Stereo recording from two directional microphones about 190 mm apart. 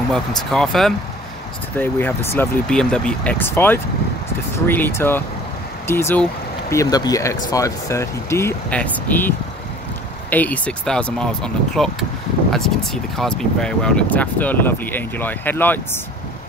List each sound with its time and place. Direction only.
0.5 s speech: centre (ahead or behind)
10.3 s speech: 10° left (ahead or behind)